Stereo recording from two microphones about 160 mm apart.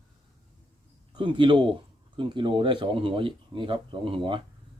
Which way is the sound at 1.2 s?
30° right (ahead or behind).